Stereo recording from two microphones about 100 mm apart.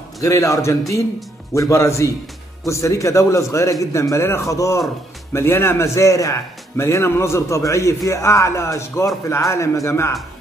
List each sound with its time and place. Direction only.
0.2 s a man's voice: 30° left (ahead or behind)